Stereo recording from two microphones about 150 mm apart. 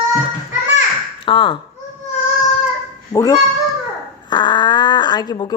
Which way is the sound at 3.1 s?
20° left (ahead or behind).